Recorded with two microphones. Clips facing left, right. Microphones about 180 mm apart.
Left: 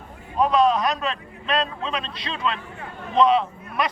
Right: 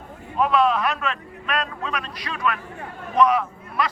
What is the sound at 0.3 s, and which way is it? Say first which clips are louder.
A man's voice: left 1 dB; 40° left (ahead or behind).